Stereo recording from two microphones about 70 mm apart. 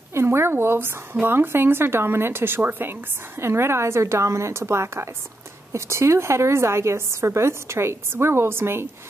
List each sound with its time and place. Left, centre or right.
0.1 s a woman's voice: right